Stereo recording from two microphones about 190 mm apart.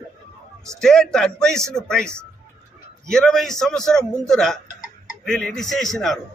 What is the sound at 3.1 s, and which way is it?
A man's voice, 5° left (ahead or behind).